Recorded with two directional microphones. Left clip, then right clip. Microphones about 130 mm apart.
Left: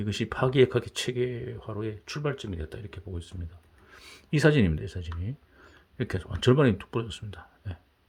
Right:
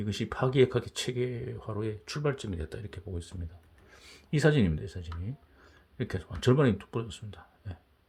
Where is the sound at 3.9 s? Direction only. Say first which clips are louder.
Left 4 dB; 35° left (ahead or behind).